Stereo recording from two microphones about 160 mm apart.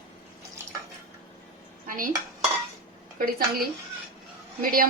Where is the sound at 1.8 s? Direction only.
60° right (ahead or behind).